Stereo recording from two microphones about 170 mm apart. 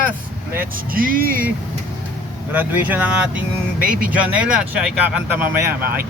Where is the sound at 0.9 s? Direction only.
55° right (ahead or behind).